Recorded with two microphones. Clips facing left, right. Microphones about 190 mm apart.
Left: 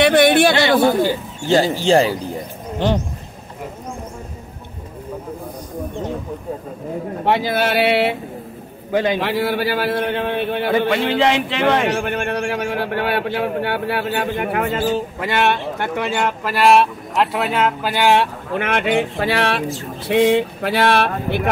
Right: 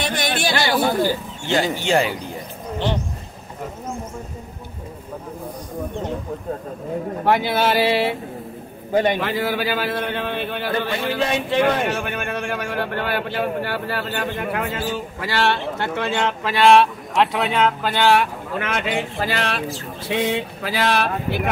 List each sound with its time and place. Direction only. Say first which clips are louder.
0.0 s a man's voice: left 11 dB; 60° left (ahead or behind)
0.6 s speech: left 5 dB; 20° left (ahead or behind)
1.4 s speech: left 6 dB; 35° left (ahead or behind)
7.5 s speech: left 1 dB; 75° left (ahead or behind)
12.0 s a man's voice: left 5 dB; 55° left (ahead or behind)
12.4 s a man's voice: left 3 dB; 65° left (ahead or behind)
15.1 s speech: left 3 dB; 20° left (ahead or behind)
18.6 s a man's voice: left 6 dB; 60° left (ahead or behind)